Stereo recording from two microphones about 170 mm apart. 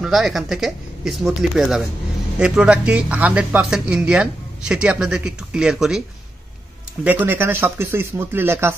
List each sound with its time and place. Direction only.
0.0 s speech: centre (ahead or behind)
7.1 s speech: 10° right (ahead or behind)